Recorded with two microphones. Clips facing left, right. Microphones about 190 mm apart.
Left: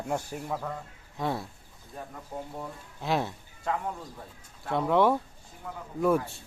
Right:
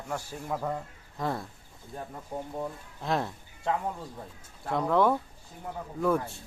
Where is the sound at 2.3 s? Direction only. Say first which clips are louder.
Right 2 dB; 25° right (ahead or behind).